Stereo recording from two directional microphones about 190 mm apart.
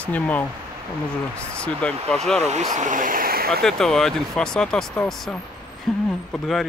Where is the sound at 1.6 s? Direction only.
5° left (ahead or behind).